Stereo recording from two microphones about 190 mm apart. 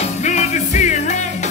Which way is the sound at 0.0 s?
35° left (ahead or behind).